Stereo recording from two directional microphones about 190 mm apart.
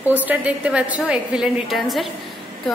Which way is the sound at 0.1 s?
10° right (ahead or behind).